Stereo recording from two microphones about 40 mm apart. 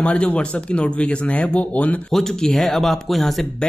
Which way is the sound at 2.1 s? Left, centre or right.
Centre.